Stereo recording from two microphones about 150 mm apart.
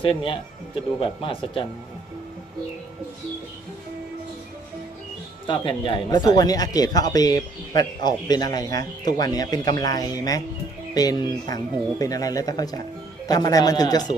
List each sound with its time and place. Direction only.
0.0 s speech: 35° left (ahead or behind)
5.5 s speech: 30° left (ahead or behind)